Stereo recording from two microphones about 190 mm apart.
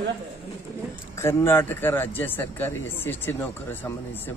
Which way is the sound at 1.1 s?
15° left (ahead or behind).